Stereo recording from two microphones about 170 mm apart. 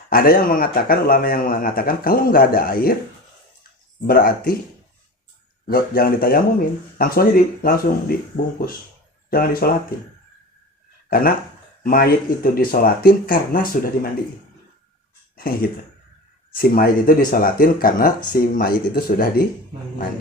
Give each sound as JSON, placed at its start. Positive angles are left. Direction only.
{"t": 0.1, "sound": "a man's voice", "side_deg": 60}
{"t": 4.0, "sound": "a man's voice", "side_deg": 60}
{"t": 5.6, "sound": "a man's voice", "side_deg": 60}
{"t": 11.1, "sound": "a man's voice", "side_deg": 60}
{"t": 16.6, "sound": "a man's voice", "side_deg": 60}